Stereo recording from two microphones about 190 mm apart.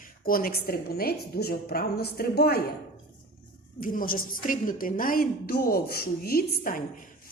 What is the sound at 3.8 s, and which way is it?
A woman's voice, 45° left (ahead or behind).